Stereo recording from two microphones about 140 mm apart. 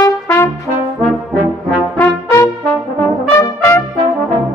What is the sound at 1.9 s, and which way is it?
Brass instrument, 15° left (ahead or behind).